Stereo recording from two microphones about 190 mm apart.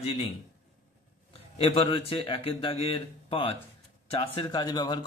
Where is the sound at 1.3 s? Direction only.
30° left (ahead or behind).